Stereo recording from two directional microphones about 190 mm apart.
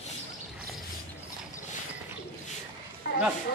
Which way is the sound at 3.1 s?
65° left (ahead or behind).